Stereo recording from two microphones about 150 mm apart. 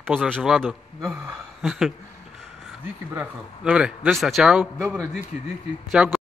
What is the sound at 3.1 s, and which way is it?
A man's voice, 10° right (ahead or behind).